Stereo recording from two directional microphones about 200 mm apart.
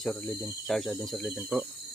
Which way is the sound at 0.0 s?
5° left (ahead or behind).